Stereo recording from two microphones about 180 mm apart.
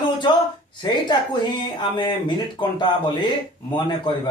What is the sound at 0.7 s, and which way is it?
A woman's voice, 25° left (ahead or behind).